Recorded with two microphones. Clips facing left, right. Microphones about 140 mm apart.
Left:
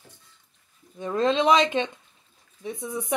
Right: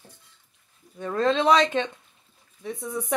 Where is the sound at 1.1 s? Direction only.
15° left (ahead or behind).